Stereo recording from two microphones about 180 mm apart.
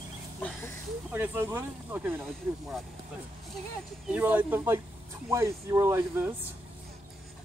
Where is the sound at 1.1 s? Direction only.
15° right (ahead or behind).